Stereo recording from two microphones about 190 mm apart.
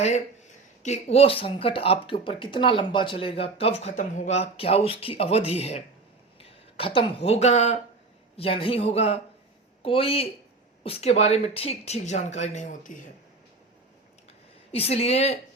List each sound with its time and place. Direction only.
0.8 s speech: 35° left (ahead or behind)
14.7 s speech: 30° left (ahead or behind)